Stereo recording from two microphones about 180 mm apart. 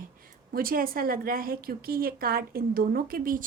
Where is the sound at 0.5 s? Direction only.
55° right (ahead or behind).